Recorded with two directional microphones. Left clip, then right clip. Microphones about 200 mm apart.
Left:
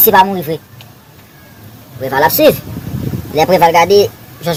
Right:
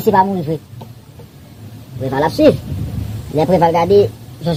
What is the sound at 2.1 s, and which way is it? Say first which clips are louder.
Speech: left 5 dB; 5° left (ahead or behind).